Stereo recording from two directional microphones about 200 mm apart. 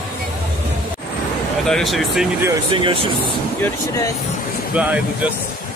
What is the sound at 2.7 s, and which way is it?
Speech, 25° right (ahead or behind).